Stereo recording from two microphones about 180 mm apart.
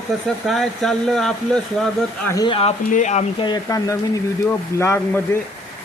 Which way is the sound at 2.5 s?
30° left (ahead or behind).